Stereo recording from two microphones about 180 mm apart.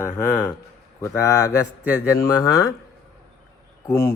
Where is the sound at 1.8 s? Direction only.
10° right (ahead or behind).